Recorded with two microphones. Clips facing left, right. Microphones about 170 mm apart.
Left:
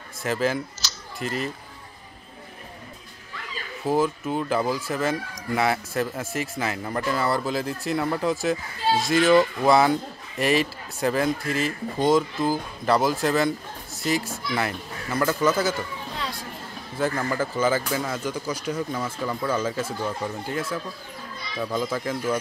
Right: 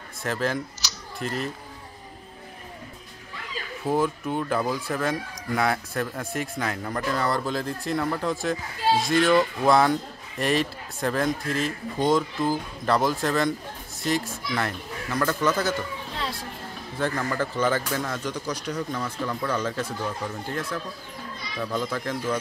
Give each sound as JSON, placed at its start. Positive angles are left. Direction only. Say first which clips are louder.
{"t": 0.2, "sound": "speech", "louder": "left 3 dB", "side_deg": 5}
{"t": 0.8, "sound": "a sound", "louder": "even", "side_deg": -15}
{"t": 1.2, "sound": "speech", "louder": "left 1 dB", "side_deg": 5}
{"t": 3.8, "sound": "speech", "louder": "left 2 dB", "side_deg": 5}
{"t": 17.0, "sound": "speech", "louder": "left 2 dB", "side_deg": 5}